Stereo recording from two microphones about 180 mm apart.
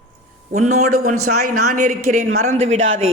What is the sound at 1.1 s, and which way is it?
A woman's voice, 50° right (ahead or behind).